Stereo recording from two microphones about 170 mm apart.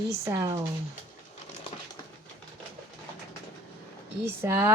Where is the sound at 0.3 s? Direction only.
20° right (ahead or behind).